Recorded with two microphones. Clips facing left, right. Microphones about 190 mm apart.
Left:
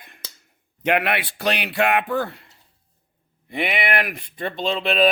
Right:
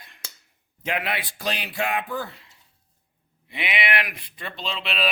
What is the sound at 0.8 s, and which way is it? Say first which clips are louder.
Speech: left 7 dB; 65° left (ahead or behind).